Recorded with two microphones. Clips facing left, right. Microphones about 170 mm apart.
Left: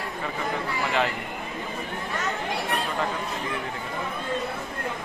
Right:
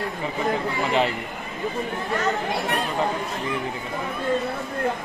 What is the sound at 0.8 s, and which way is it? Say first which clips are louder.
Speech: right 3 dB; 20° right (ahead or behind).